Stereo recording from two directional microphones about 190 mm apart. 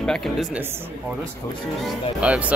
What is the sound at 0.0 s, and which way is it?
Speech, 5° left (ahead or behind).